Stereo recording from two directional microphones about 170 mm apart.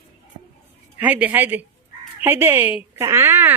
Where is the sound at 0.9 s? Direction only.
10° right (ahead or behind).